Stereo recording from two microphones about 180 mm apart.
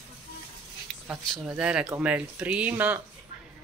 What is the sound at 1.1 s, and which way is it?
Speech, 5° right (ahead or behind).